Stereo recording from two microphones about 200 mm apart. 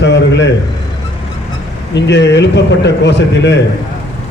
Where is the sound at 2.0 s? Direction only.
60° left (ahead or behind).